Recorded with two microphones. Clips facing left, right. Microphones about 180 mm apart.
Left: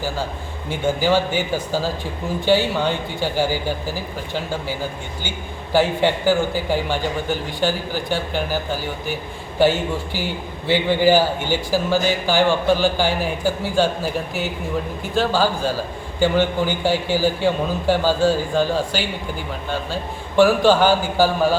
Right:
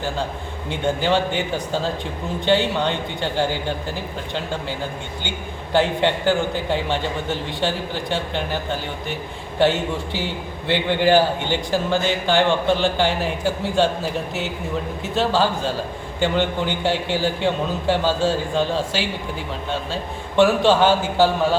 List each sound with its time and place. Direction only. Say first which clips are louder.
0.7 s a man's voice: left 2 dB; 5° left (ahead or behind)